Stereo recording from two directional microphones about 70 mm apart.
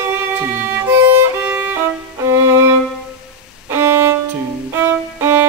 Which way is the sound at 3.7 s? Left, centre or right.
Right.